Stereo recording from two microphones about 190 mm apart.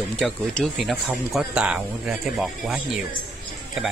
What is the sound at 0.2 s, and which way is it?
Speech, centre (ahead or behind).